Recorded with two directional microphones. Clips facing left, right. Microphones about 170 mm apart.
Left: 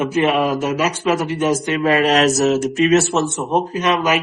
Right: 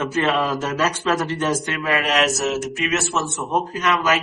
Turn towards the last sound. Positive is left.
turn(degrees=20)  # may be behind; listen again after turning